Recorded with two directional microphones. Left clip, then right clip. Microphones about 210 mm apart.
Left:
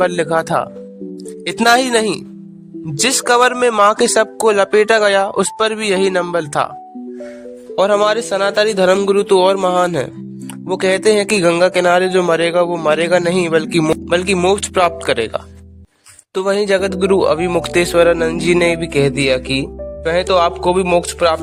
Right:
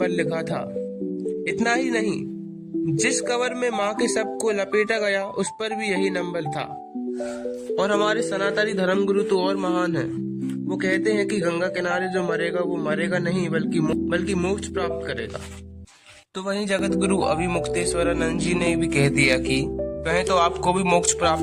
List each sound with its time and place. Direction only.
0.0 s speech: 45° left (ahead or behind)
7.8 s speech: 35° left (ahead or behind); by 15.4 s 50° left (ahead or behind)
16.3 s speech: 40° left (ahead or behind)